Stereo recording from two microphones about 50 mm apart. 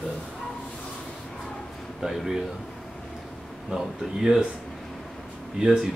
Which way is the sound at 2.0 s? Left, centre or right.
Centre.